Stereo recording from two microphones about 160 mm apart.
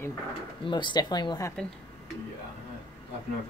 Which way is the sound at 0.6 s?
30° left (ahead or behind).